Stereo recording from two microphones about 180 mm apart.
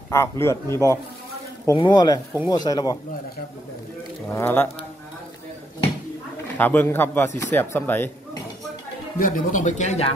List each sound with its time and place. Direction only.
0.1 s speech: 15° left (ahead or behind)
4.3 s speech: 10° left (ahead or behind)
6.4 s speech: 10° left (ahead or behind)
9.2 s speech: 45° left (ahead or behind)